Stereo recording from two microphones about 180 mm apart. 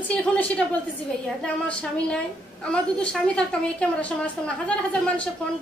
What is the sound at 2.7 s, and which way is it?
A woman's voice, 5° left (ahead or behind).